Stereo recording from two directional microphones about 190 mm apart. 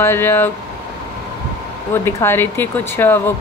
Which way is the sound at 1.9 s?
10° left (ahead or behind).